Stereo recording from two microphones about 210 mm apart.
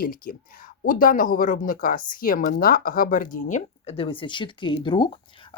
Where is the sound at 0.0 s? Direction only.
45° left (ahead or behind).